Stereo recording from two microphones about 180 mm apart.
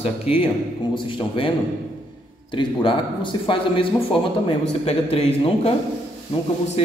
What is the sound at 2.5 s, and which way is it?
A man's voice, 30° left (ahead or behind).